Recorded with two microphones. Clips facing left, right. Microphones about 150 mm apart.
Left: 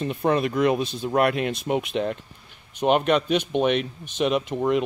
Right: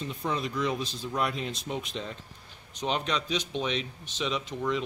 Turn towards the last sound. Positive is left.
turn(degrees=55)  # may be behind; listen again after turning